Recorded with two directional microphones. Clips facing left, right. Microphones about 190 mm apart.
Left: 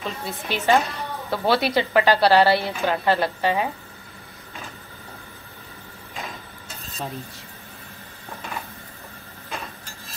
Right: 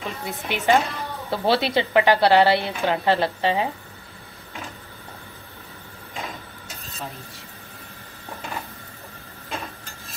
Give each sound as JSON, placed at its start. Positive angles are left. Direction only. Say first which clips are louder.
{"t": 0.2, "sound": "a woman's voice", "louder": "even", "side_deg": -15}